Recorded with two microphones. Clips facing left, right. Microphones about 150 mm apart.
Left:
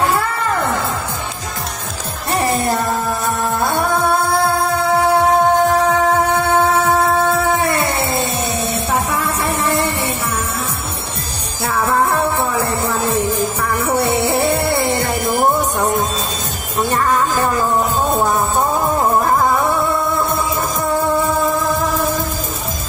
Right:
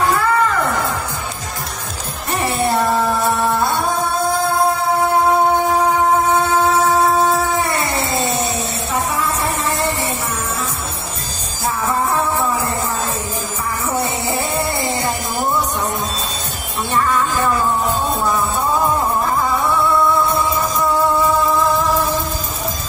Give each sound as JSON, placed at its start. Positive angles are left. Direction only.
{"t": 2.4, "sound": "music", "side_deg": 40}
{"t": 3.5, "sound": "music", "side_deg": 50}
{"t": 7.3, "sound": "cat", "side_deg": 60}
{"t": 8.9, "sound": "music", "side_deg": 60}
{"t": 11.6, "sound": "music", "side_deg": 65}